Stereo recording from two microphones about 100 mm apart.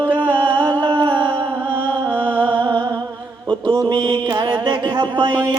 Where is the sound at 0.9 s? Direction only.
55° right (ahead or behind).